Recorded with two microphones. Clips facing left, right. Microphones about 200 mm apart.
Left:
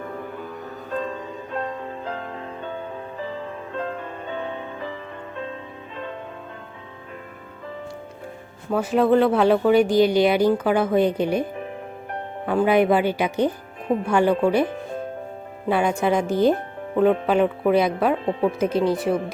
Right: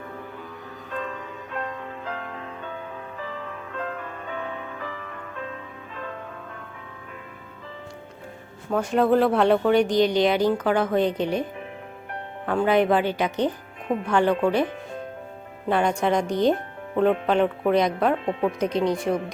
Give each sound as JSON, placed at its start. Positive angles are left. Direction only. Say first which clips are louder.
{"t": 0.9, "sound": "music", "louder": "left 4 dB", "side_deg": 30}
{"t": 8.7, "sound": "speech", "louder": "left 2 dB", "side_deg": 5}
{"t": 12.5, "sound": "speech", "louder": "left 2 dB", "side_deg": 10}
{"t": 15.7, "sound": "speech", "louder": "left 1 dB", "side_deg": 5}
{"t": 18.3, "sound": "speech", "louder": "left 2 dB", "side_deg": 35}
{"t": 18.6, "sound": "speech", "louder": "left 2 dB", "side_deg": 5}